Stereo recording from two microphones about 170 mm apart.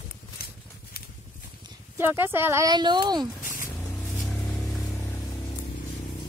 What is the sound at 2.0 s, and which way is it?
Speech, 10° right (ahead or behind).